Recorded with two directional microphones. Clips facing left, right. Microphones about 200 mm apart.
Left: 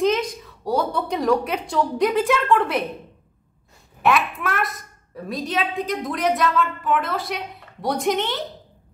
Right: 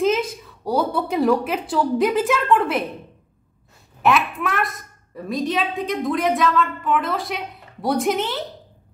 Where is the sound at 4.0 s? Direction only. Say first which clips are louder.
Right 1 dB; centre (ahead or behind).